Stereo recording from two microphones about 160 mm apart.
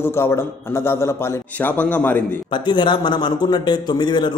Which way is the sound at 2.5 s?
30° left (ahead or behind).